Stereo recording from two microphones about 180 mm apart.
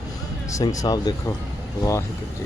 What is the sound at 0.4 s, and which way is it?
Speech, 20° left (ahead or behind).